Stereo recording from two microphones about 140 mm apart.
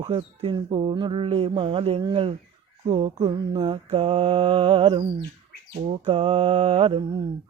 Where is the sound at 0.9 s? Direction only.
40° right (ahead or behind).